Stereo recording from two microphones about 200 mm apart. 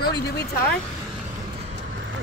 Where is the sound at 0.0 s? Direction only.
55° left (ahead or behind).